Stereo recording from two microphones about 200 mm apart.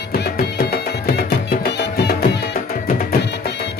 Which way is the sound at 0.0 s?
55° left (ahead or behind).